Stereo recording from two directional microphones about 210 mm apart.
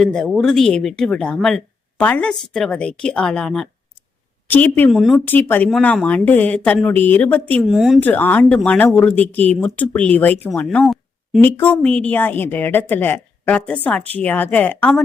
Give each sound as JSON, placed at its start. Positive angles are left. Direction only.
{"t": 0.0, "sound": "a woman's voice", "side_deg": 0}
{"t": 8.0, "sound": "a woman's voice", "side_deg": 10}